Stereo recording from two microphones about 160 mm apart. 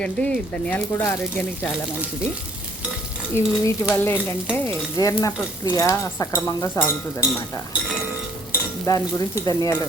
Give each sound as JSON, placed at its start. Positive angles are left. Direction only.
{"t": 0.0, "sound": "speech", "side_deg": 5}
{"t": 3.3, "sound": "speech", "side_deg": 20}
{"t": 8.9, "sound": "speech", "side_deg": 20}